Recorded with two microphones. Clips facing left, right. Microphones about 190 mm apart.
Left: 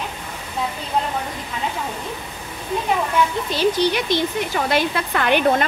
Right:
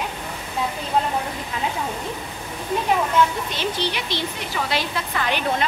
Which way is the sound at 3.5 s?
45° left (ahead or behind).